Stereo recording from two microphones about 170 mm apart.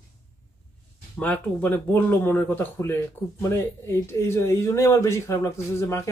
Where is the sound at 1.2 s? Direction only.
10° left (ahead or behind).